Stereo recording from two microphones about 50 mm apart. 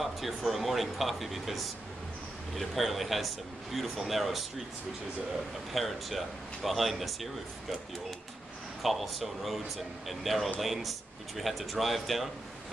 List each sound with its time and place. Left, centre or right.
0.0 s a man's voice: centre
5.7 s a man's voice: centre
8.8 s a man's voice: centre